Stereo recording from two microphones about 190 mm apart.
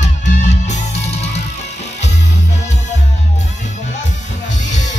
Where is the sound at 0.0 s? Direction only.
40° left (ahead or behind).